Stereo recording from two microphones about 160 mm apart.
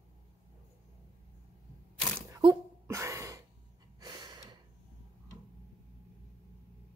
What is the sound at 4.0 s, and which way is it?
Gasp, 25° right (ahead or behind).